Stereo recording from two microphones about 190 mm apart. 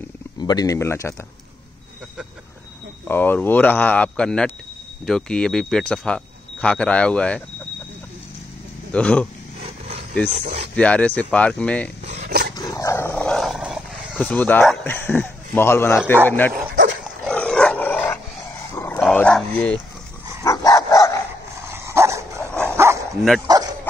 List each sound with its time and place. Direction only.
0.4 s speech: 20° left (ahead or behind)
3.1 s speech: 10° left (ahead or behind)
8.9 s speech: 5° left (ahead or behind)
9.6 s vehicle: 35° right (ahead or behind)
10.3 s speech: 35° right (ahead or behind)
10.8 s speech: 5° left (ahead or behind)
12.3 s dog: 60° right (ahead or behind)
12.5 s dog: 20° left (ahead or behind)
16.3 s speech: 10° left (ahead or behind)
17.2 s dog: 5° left (ahead or behind)
20.4 s dog: 20° left (ahead or behind)
21.6 s dog: 15° right (ahead or behind)